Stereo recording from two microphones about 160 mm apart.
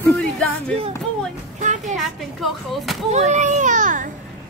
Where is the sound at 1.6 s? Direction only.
50° right (ahead or behind).